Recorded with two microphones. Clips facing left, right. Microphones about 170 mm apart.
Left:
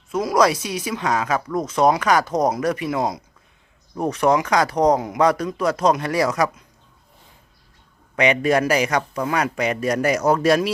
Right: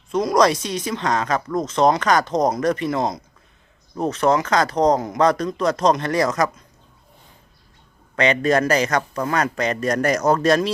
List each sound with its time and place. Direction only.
0.1 s speech: 5° left (ahead or behind)
8.1 s speech: 10° left (ahead or behind)